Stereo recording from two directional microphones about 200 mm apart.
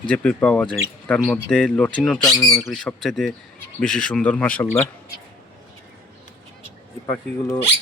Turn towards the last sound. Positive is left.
turn(degrees=15)  # may be behind; listen again after turning